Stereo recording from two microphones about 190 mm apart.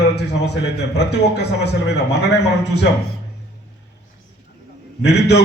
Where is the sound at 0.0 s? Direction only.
65° left (ahead or behind).